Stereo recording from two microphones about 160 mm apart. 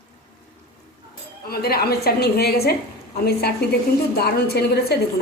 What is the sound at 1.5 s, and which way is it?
A woman's voice, 75° left (ahead or behind).